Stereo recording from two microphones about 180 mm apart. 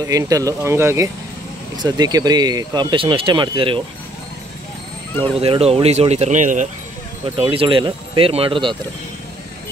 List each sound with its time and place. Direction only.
0.0 s speech: 20° right (ahead or behind)
5.4 s speech: 35° right (ahead or behind)
7.3 s speech: 30° right (ahead or behind)